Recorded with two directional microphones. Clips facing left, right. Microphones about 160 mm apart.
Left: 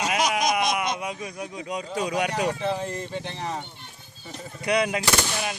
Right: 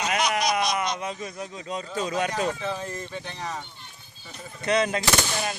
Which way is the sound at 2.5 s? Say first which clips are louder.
Left 3 dB; 30° left (ahead or behind).